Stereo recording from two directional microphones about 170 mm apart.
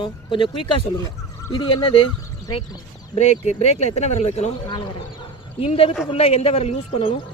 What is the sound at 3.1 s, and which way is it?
Speech, 40° left (ahead or behind).